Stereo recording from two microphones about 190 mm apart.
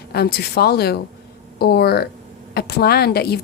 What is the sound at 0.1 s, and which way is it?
A woman's voice, 55° left (ahead or behind).